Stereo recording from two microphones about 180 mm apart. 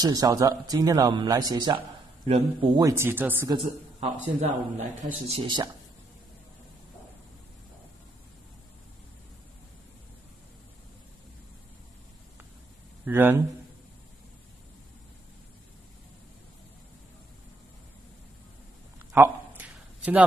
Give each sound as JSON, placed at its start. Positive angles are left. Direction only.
{"t": 0.0, "sound": "speech", "side_deg": -20}
{"t": 2.9, "sound": "speech", "side_deg": -10}
{"t": 3.4, "sound": "a man's voice", "side_deg": -30}
{"t": 13.0, "sound": "speech", "side_deg": -10}
{"t": 19.1, "sound": "a sound", "side_deg": -10}